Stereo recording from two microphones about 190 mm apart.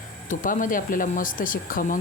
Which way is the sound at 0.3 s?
40° left (ahead or behind).